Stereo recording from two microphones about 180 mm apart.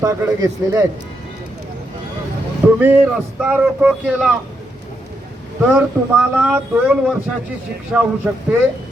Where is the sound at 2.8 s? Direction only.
5° right (ahead or behind).